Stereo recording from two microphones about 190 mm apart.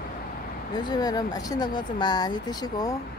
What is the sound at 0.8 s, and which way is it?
Speech, 20° left (ahead or behind).